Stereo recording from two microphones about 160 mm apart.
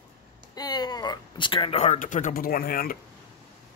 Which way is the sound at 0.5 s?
25° left (ahead or behind).